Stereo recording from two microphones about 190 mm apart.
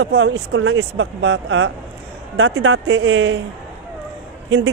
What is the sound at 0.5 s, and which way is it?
A man's voice, 90° right.